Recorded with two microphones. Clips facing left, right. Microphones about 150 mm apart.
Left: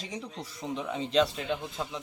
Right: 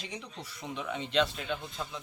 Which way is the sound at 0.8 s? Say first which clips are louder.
Left 3 dB; 35° left (ahead or behind).